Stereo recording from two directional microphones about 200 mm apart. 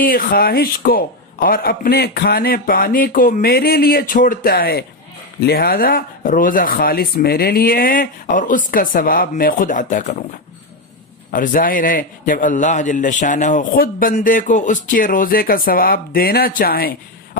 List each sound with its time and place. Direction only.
0.0 s a man's voice: 45° left (ahead or behind)
11.3 s a man's voice: 45° left (ahead or behind)